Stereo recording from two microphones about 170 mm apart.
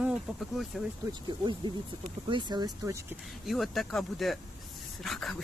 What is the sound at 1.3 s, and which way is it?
Speech, 30° right (ahead or behind).